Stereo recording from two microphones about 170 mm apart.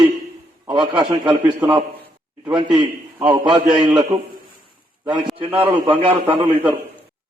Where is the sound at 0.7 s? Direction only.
25° right (ahead or behind).